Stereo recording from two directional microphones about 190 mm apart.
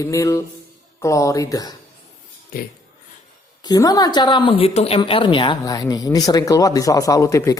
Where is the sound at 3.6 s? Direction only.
20° left (ahead or behind).